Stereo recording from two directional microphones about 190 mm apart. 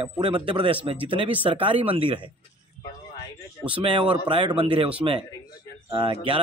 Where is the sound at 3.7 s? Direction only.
25° right (ahead or behind).